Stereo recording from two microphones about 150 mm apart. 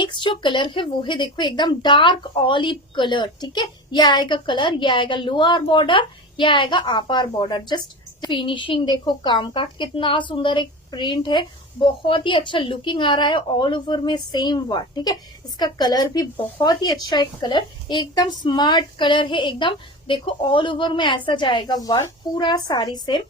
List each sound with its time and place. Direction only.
0.0 s a woman's voice: 35° left (ahead or behind)